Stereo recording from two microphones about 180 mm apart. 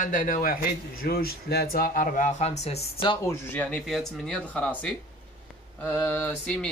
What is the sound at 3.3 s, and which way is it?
Speech, 10° left (ahead or behind).